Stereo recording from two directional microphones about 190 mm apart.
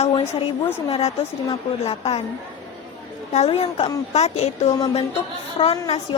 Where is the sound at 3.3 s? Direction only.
35° left (ahead or behind).